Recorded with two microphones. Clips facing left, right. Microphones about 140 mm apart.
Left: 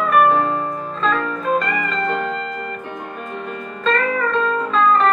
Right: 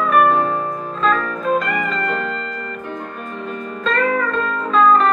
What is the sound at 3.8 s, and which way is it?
Music, centre (ahead or behind).